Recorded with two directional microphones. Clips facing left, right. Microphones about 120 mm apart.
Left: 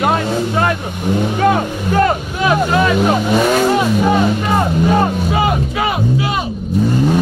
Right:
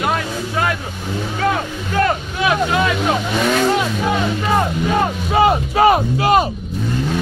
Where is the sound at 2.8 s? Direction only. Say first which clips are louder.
Left 4 dB; 10° left (ahead or behind).